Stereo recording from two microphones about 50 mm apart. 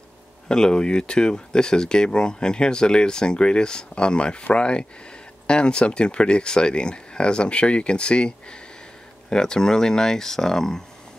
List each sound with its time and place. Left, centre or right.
0.5 s speech: centre